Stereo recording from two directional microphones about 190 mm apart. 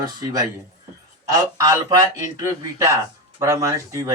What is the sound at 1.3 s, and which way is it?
Speech, 15° right (ahead or behind).